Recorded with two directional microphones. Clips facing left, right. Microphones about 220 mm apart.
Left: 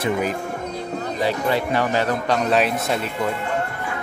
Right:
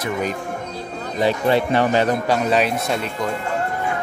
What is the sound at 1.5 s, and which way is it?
Speech, 25° right (ahead or behind).